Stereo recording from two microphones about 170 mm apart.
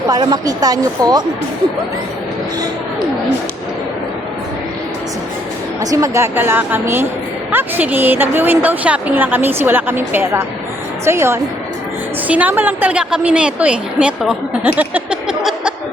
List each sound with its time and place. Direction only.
0.1 s a woman's voice: 25° right (ahead or behind)
5.8 s a woman's voice: 20° right (ahead or behind); by 15.7 s 5° right (ahead or behind)